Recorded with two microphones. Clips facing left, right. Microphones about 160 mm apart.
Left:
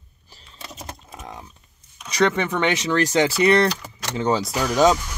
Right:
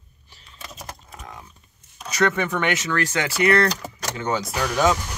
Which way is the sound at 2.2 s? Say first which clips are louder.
Left 2 dB; 20° left (ahead or behind).